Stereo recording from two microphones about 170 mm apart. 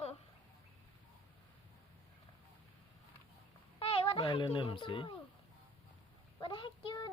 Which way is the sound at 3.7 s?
35° left (ahead or behind).